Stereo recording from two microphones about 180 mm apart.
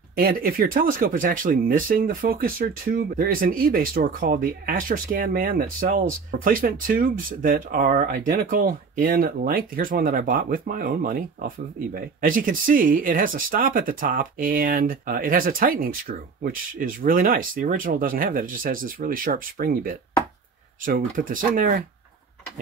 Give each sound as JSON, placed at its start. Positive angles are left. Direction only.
{"t": 0.1, "sound": "speech", "side_deg": -55}